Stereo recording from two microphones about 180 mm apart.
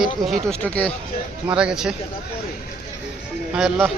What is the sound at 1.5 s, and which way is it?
Speech, 5° right (ahead or behind).